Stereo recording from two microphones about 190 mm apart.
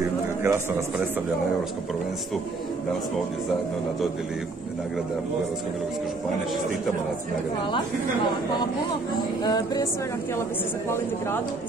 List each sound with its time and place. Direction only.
0.4 s a man's voice: 15° right (ahead or behind)
9.4 s music: 20° left (ahead or behind)
10.9 s a woman's voice: 10° left (ahead or behind)